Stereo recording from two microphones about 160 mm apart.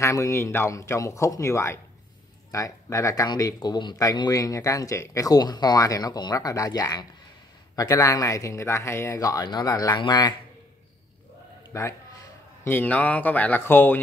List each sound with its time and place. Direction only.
0.0 s speech: 20° left (ahead or behind)
11.7 s a man's voice: 20° left (ahead or behind)